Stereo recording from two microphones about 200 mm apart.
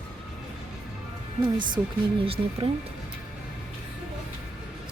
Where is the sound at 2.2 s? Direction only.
30° right (ahead or behind).